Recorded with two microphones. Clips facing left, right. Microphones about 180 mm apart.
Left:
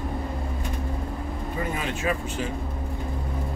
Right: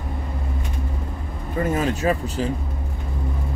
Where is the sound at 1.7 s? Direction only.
40° right (ahead or behind).